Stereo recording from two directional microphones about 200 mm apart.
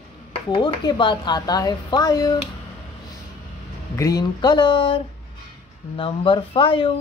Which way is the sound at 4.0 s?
15° left (ahead or behind).